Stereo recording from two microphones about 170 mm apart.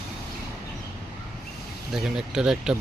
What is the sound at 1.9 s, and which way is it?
Speech, 5° right (ahead or behind).